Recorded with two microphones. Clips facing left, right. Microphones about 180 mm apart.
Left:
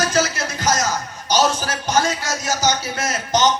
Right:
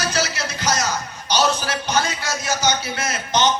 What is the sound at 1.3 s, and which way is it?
A man's voice, 45° left (ahead or behind).